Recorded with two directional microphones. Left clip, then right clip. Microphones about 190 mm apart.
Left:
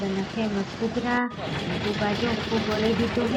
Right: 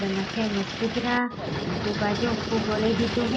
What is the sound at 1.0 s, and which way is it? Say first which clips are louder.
Speech: even; centre (ahead or behind).